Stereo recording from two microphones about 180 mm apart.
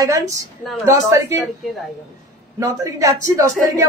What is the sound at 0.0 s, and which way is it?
A woman's voice, 15° right (ahead or behind).